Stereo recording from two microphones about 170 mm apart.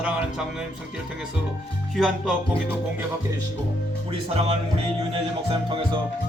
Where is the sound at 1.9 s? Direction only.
Centre (ahead or behind).